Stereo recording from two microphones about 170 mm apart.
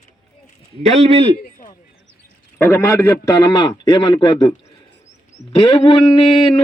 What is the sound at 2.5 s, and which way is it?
A man's voice, 10° left (ahead or behind).